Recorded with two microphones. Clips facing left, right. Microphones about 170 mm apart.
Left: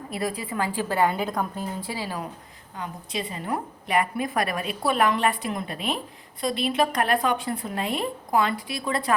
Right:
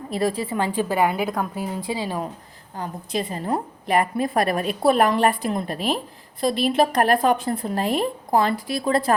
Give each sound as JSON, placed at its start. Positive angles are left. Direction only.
{"t": 0.1, "sound": "a woman's voice", "side_deg": -30}
{"t": 1.9, "sound": "speech", "side_deg": -20}
{"t": 2.7, "sound": "a woman's voice", "side_deg": -40}